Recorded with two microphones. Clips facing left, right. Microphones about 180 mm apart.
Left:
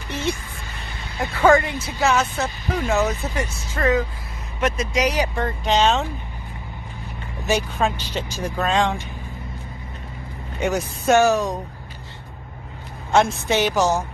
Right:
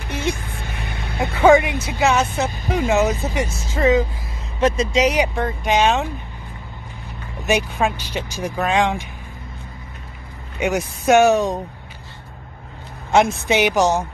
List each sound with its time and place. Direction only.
0.1 s music: 55° right (ahead or behind)
1.2 s speech: 20° right (ahead or behind)
5.3 s speech: 10° right (ahead or behind)
7.4 s speech: 15° right (ahead or behind)
10.6 s speech: 15° right (ahead or behind)
13.1 s speech: 15° right (ahead or behind)